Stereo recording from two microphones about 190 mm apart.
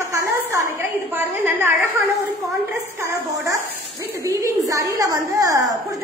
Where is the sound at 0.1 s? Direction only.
15° right (ahead or behind).